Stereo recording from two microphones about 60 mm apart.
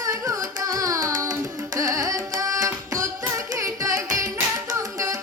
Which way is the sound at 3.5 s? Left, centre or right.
Right.